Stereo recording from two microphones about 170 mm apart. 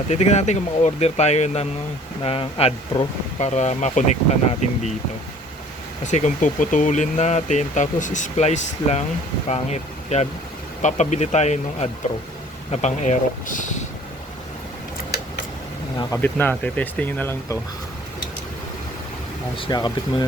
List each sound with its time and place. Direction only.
0.1 s speech: 40° left (ahead or behind)
6.1 s speech: 45° left (ahead or behind)
16.2 s speech: 10° left (ahead or behind)
19.5 s speech: 30° left (ahead or behind)